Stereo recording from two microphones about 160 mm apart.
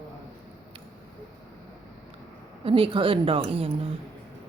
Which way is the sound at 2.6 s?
35° right (ahead or behind).